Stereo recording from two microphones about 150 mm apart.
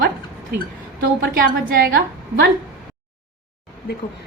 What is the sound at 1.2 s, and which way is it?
Speech, 75° right (ahead or behind).